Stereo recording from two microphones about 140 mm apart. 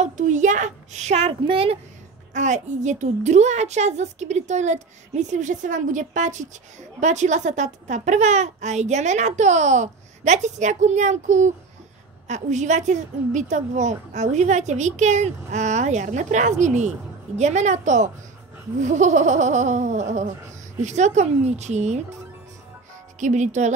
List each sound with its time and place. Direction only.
0.0 s a woman's voice: 60° right (ahead or behind); by 1.8 s 45° right (ahead or behind)
2.3 s a woman's voice: 60° right (ahead or behind)
23.1 s a woman's voice: 60° right (ahead or behind)